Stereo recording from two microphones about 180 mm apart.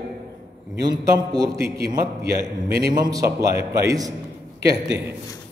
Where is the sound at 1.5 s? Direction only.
60° right (ahead or behind).